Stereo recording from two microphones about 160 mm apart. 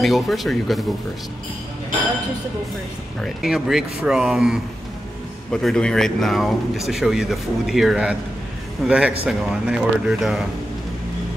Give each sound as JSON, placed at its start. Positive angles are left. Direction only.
{"t": 0.0, "sound": "speech", "side_deg": 0}
{"t": 3.2, "sound": "speech", "side_deg": 0}